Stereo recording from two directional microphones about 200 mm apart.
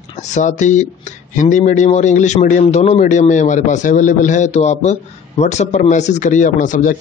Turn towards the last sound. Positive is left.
turn(degrees=40)  # may be behind; listen again after turning